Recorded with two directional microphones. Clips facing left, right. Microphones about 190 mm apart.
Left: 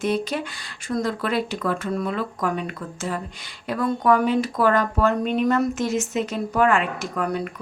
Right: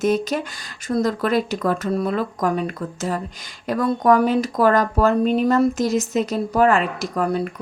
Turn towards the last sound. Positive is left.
turn(degrees=-35)  # may be behind; listen again after turning